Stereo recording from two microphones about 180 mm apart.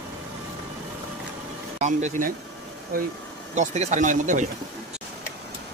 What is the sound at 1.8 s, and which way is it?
Speech, 40° right (ahead or behind).